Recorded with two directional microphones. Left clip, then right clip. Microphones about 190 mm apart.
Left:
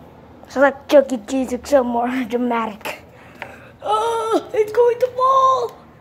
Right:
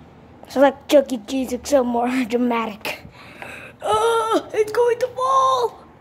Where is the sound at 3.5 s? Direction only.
40° right (ahead or behind).